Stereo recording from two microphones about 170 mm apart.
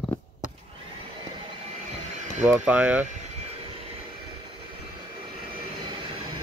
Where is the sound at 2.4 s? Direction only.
5° right (ahead or behind).